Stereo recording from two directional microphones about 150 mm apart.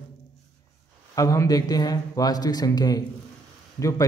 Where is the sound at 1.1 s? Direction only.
20° left (ahead or behind).